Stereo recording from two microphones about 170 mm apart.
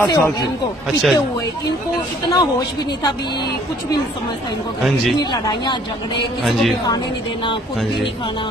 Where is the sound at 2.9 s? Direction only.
25° left (ahead or behind).